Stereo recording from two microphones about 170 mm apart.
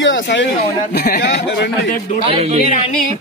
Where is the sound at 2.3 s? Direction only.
35° right (ahead or behind).